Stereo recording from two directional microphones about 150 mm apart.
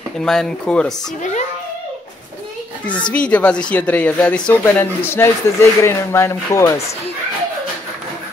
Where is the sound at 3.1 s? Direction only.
10° left (ahead or behind).